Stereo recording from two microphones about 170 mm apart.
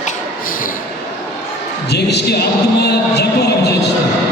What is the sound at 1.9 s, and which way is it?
Music, 80° left.